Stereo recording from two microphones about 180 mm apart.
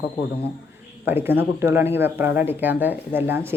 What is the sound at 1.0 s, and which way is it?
Speech, 10° right (ahead or behind).